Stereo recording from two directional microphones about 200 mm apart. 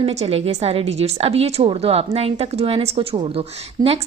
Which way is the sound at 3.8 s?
20° right (ahead or behind).